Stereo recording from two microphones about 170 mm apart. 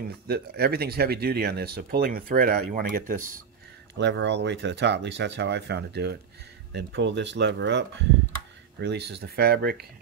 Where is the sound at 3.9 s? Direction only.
90° right.